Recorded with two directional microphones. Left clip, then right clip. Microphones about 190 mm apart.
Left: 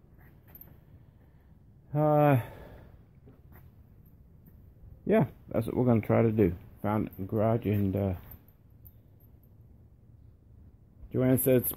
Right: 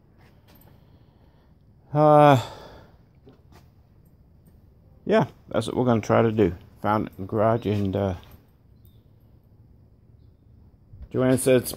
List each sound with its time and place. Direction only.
1.9 s speech: 25° right (ahead or behind)
5.0 s speech: centre (ahead or behind)
11.1 s speech: 5° right (ahead or behind)